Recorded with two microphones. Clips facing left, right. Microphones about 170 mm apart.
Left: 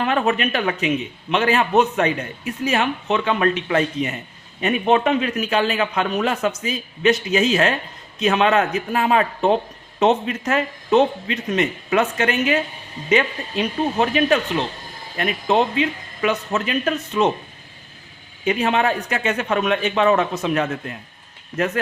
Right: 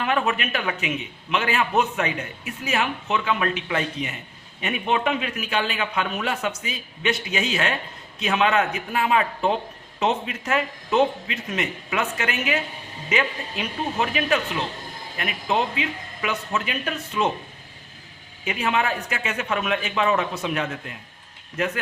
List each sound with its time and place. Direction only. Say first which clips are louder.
0.0 s a man's voice: left 4 dB; 35° left (ahead or behind)
18.4 s a man's voice: left 5 dB; 35° left (ahead or behind)